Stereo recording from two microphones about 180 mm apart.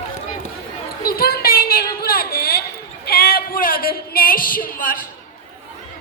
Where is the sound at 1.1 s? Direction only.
55° left (ahead or behind).